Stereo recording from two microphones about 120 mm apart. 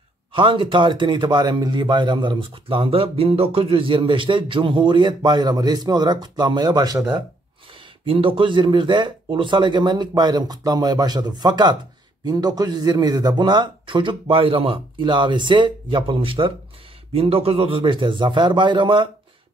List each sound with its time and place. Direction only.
0.3 s a man's voice: 45° right (ahead or behind)
8.0 s a man's voice: 50° right (ahead or behind)